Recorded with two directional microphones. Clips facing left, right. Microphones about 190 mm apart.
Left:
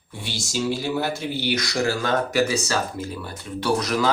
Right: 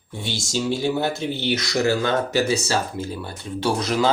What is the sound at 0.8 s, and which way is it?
A man's voice, 25° right (ahead or behind).